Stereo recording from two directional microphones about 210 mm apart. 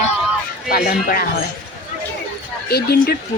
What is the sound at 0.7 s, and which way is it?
Speech, 45° left (ahead or behind).